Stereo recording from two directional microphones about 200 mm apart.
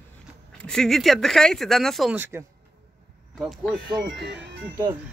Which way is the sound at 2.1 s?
10° right (ahead or behind).